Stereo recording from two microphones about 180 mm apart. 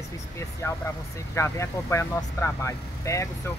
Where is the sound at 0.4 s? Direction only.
15° left (ahead or behind).